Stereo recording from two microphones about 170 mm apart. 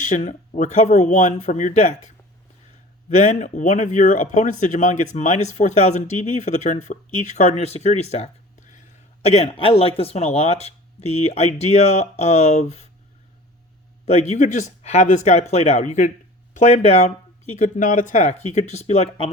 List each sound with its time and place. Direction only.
0.0 s speech: 45° left (ahead or behind)
14.0 s speech: 40° left (ahead or behind)